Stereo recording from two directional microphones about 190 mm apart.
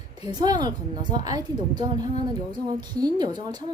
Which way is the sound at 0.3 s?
20° right (ahead or behind).